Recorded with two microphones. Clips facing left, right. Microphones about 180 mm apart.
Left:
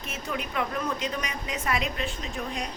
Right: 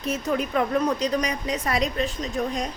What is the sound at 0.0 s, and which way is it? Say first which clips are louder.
A woman's voice: right 8 dB; 40° right (ahead or behind).